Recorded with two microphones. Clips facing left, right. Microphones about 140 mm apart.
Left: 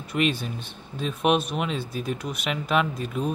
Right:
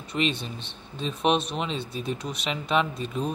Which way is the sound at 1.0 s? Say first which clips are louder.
Left 1 dB; 5° left (ahead or behind).